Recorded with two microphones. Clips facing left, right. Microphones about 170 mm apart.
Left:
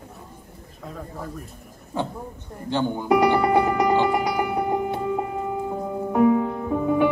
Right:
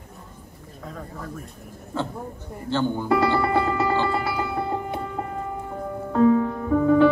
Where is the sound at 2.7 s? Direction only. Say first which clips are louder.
Left 1 dB; 15° left (ahead or behind).